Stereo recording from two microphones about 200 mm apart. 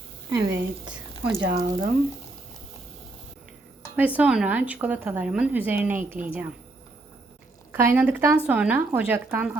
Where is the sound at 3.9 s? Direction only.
5° right (ahead or behind).